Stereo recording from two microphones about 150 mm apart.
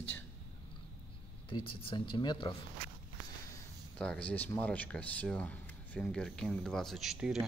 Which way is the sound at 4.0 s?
5° left (ahead or behind).